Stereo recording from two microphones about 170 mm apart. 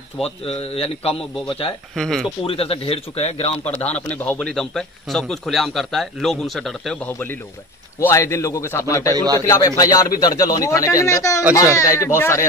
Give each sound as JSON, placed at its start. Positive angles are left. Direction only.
{"t": 0.2, "sound": "a man's voice", "side_deg": 35}
{"t": 2.0, "sound": "a man's voice", "side_deg": 0}
{"t": 2.4, "sound": "a man's voice", "side_deg": 35}
{"t": 3.7, "sound": "a man's voice", "side_deg": 10}
{"t": 9.1, "sound": "a man's voice", "side_deg": -25}
{"t": 9.5, "sound": "a man's voice", "side_deg": 20}